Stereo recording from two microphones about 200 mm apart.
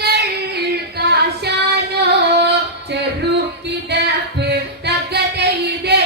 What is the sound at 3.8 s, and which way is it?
Music, 55° right (ahead or behind).